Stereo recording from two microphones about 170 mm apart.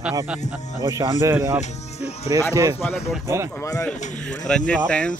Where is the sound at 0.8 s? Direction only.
20° right (ahead or behind).